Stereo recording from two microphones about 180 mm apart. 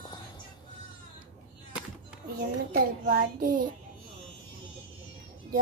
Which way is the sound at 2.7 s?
50° right (ahead or behind).